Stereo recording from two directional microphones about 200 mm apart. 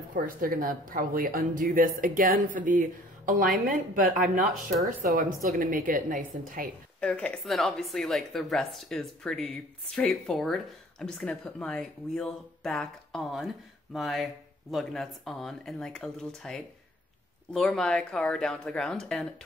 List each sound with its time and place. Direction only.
0.1 s a woman's voice: 45° right (ahead or behind)
7.0 s speech: 5° left (ahead or behind)